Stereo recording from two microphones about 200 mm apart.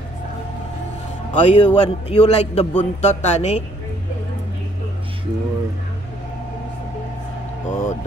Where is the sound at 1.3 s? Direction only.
35° left (ahead or behind).